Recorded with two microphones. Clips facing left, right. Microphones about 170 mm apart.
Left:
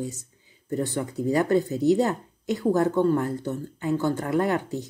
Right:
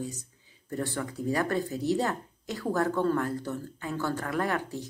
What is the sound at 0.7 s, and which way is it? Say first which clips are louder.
Speech: left 5 dB; 20° left (ahead or behind).